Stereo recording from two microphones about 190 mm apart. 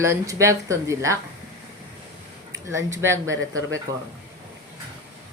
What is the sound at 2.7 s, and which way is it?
Speech, 15° right (ahead or behind).